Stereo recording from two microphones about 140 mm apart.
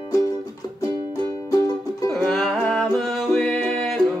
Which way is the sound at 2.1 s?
5° left (ahead or behind).